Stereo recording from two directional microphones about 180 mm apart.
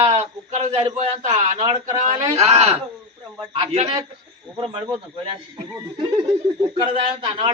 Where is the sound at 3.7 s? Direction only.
35° right (ahead or behind).